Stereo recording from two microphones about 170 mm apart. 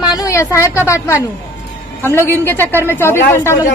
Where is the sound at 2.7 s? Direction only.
15° right (ahead or behind).